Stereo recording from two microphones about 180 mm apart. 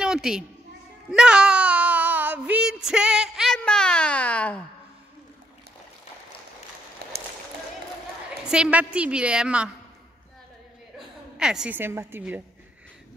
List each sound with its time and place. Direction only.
0.0 s a sound: 5° right (ahead or behind)
8.5 s a woman's voice: 5° right (ahead or behind)
11.0 s a woman's voice: 5° right (ahead or behind)